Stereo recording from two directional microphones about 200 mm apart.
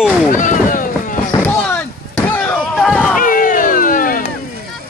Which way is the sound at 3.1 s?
45° left (ahead or behind).